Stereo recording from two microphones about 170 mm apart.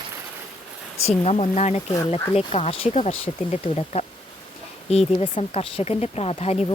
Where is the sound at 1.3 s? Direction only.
40° left (ahead or behind).